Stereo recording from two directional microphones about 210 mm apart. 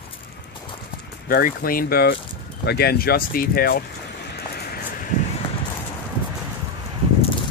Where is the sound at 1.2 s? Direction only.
45° left (ahead or behind).